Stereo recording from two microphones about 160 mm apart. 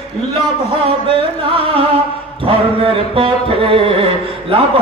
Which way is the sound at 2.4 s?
35° right (ahead or behind).